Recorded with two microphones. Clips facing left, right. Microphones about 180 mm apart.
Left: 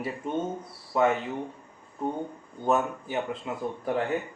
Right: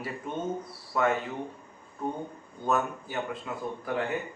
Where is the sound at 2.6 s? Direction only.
25° left (ahead or behind).